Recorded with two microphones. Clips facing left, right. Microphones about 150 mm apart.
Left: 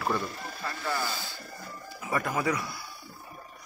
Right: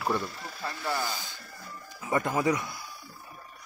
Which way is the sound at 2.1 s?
20° right (ahead or behind).